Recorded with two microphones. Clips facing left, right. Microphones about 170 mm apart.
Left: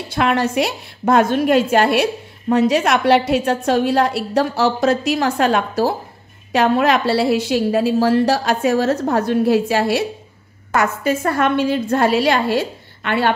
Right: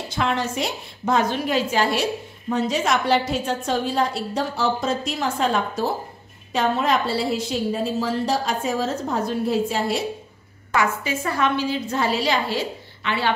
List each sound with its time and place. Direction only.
0.1 s a woman's voice: 65° left (ahead or behind)
10.7 s a woman's voice: 50° left (ahead or behind)